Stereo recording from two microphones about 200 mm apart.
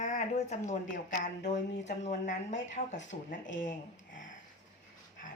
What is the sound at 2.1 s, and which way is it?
Speech, 40° left (ahead or behind).